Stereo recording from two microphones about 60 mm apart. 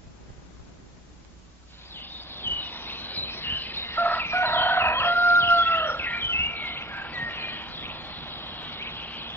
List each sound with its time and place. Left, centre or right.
1.9 s bird: left